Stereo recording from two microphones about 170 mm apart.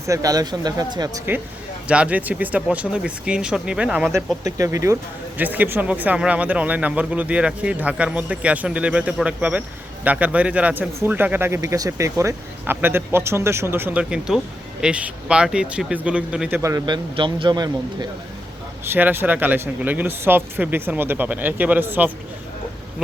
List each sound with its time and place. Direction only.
0.0 s speech: 20° right (ahead or behind)
4.4 s speech: 20° right (ahead or behind)
18.9 s speech: 10° right (ahead or behind)